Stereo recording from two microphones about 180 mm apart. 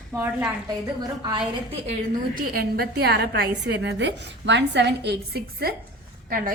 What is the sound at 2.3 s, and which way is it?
A woman's voice, 55° right (ahead or behind).